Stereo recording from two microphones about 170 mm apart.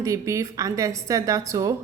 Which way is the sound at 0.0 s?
20° right (ahead or behind).